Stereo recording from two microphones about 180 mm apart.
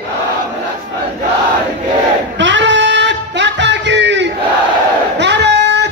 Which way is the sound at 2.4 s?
85° right.